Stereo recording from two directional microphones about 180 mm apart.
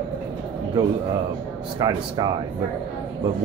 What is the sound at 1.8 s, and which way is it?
Speech, 20° right (ahead or behind).